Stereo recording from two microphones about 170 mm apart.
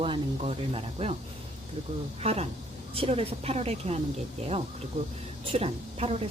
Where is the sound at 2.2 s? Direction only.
35° right (ahead or behind).